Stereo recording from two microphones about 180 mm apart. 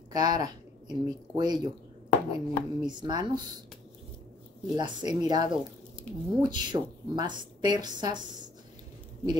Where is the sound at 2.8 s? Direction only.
25° right (ahead or behind).